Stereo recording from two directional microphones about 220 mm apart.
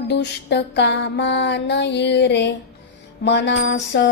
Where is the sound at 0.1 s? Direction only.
50° left (ahead or behind).